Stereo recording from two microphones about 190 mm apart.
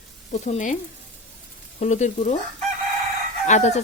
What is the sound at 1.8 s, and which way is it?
Speech, 40° left (ahead or behind).